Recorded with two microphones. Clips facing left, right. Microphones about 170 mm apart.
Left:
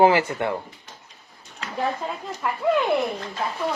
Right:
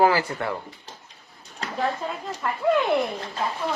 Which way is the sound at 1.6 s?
35° right (ahead or behind).